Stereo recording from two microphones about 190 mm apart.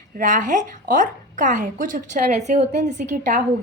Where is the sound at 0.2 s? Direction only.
40° right (ahead or behind).